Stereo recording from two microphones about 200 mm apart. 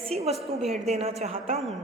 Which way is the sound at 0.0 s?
30° right (ahead or behind).